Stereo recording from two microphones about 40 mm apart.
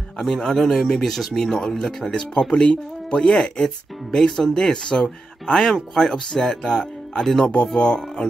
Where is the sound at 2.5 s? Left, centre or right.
Left.